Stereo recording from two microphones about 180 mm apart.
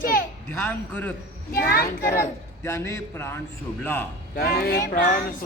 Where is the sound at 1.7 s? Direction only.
55° left (ahead or behind).